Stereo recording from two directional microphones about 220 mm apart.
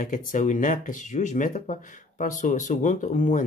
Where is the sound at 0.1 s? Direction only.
35° left (ahead or behind).